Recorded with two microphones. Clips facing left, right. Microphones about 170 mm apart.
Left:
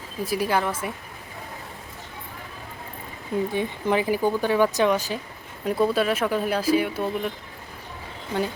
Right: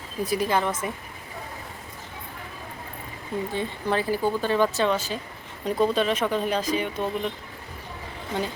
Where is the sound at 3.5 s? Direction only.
15° left (ahead or behind).